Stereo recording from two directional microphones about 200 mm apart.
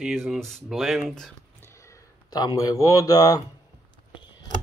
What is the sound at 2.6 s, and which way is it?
Speech, 15° left (ahead or behind).